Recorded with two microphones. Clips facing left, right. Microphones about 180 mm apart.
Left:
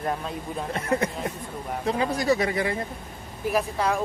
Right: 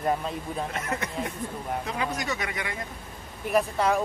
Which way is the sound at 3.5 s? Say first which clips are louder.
Right 1 dB; centre (ahead or behind).